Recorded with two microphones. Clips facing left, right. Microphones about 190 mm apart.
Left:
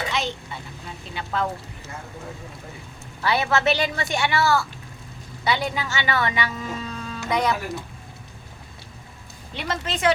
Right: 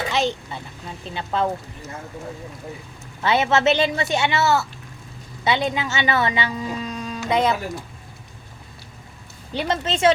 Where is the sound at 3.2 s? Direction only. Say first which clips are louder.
Right 3 dB; 20° right (ahead or behind).